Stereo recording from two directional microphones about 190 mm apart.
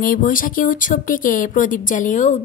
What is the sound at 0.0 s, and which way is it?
Speech, 45° left (ahead or behind).